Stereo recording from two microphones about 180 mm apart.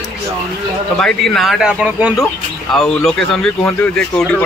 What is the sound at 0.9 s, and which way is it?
Speech, 5° left (ahead or behind).